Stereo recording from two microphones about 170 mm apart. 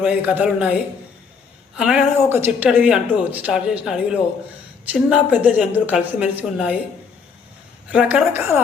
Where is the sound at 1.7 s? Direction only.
5° right (ahead or behind).